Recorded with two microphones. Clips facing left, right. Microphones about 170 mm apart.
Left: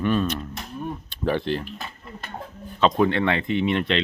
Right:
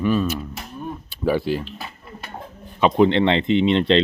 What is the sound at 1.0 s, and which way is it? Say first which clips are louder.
Speech: right 4 dB; 5° right (ahead or behind).